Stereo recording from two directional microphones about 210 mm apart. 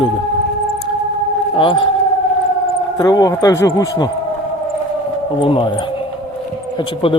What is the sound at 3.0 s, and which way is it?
Speech, 15° left (ahead or behind).